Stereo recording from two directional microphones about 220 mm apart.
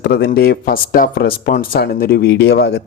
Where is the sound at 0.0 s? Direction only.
50° left (ahead or behind).